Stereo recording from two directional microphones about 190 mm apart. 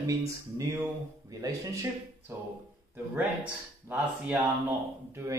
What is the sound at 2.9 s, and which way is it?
Speech, 10° right (ahead or behind).